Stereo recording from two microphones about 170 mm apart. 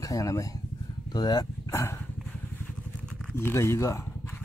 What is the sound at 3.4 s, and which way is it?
Speech, 15° left (ahead or behind).